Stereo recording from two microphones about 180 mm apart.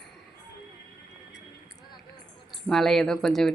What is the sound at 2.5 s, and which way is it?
Speech, centre (ahead or behind).